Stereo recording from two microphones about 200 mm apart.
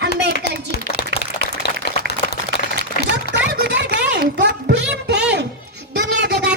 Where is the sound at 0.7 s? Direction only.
55° left (ahead or behind).